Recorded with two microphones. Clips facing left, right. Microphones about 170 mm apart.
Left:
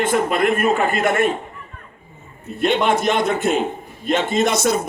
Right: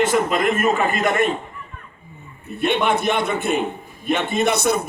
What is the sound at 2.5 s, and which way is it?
A man's voice, 60° right (ahead or behind).